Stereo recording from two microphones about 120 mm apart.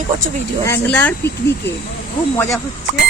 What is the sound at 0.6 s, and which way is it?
Speech, 20° left (ahead or behind).